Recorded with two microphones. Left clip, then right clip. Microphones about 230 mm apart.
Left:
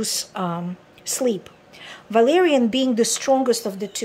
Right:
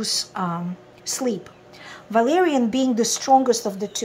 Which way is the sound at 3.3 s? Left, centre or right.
Left.